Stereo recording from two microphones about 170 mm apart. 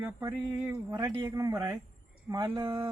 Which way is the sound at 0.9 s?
20° right (ahead or behind).